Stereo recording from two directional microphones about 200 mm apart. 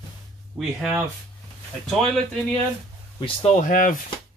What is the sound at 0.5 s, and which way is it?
Speech, 5° right (ahead or behind).